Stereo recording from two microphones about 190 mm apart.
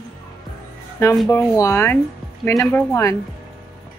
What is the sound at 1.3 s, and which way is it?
Speech, 15° left (ahead or behind).